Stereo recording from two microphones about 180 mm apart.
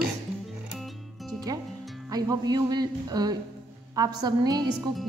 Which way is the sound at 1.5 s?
20° right (ahead or behind).